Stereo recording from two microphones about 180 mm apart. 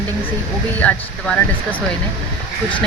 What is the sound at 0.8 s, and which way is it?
Speech, 5° left (ahead or behind).